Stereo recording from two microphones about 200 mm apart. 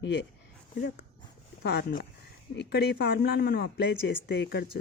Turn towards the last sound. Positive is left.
turn(degrees=55)  # may be behind; listen again after turning